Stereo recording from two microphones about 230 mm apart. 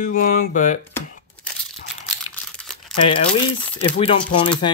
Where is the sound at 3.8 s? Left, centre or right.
Left.